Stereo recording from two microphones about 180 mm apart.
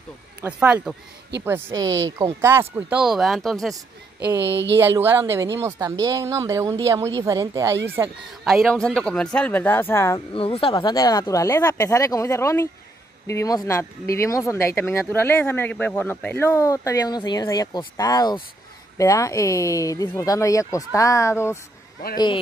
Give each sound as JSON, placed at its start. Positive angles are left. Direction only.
{"t": 0.4, "sound": "speech", "side_deg": -5}
{"t": 3.0, "sound": "speech", "side_deg": 0}
{"t": 4.7, "sound": "speech", "side_deg": -15}
{"t": 8.5, "sound": "speech", "side_deg": 0}
{"t": 10.3, "sound": "speech", "side_deg": 30}